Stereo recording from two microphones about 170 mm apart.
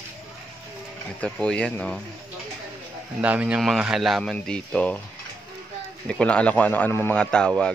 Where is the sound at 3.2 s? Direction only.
10° right (ahead or behind); by 5.0 s 5° left (ahead or behind).